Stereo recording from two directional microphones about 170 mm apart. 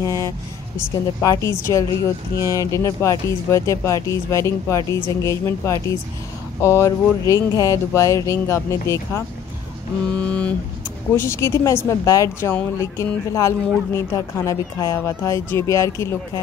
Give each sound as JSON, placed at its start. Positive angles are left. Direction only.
{"t": 0.0, "sound": "vehicle", "side_deg": 20}
{"t": 0.9, "sound": "speech", "side_deg": 20}
{"t": 10.1, "sound": "speech", "side_deg": 5}